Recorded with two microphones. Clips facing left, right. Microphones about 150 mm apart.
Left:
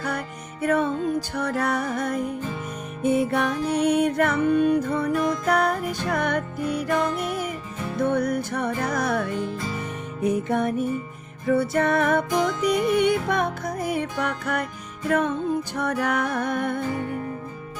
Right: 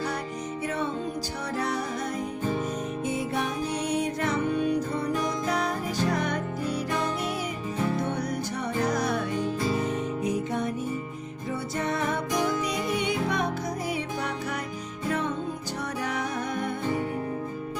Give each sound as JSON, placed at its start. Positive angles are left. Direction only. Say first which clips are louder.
{"t": 0.6, "sound": "music", "louder": "left 9 dB", "side_deg": 55}